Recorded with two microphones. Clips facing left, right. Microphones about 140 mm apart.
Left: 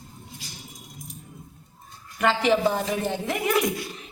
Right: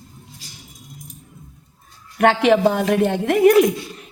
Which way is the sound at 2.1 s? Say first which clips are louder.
Right 7 dB; 75° right (ahead or behind).